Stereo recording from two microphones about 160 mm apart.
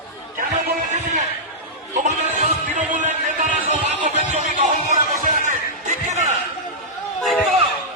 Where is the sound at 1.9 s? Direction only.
50° right (ahead or behind).